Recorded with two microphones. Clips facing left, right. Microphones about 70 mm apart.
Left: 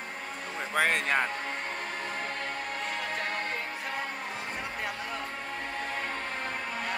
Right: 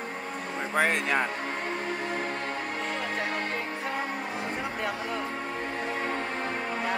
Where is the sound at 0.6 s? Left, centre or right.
Right.